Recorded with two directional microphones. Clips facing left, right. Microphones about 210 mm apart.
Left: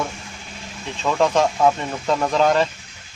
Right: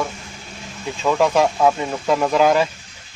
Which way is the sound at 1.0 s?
10° right (ahead or behind).